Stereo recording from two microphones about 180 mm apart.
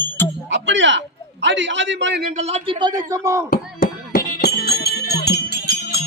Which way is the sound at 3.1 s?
15° right (ahead or behind).